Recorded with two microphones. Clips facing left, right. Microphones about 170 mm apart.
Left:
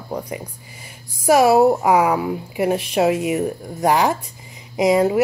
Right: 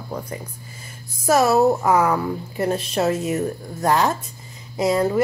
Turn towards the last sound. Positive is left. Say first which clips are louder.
# left 3 dB
turn(degrees=15)  # may be behind; listen again after turning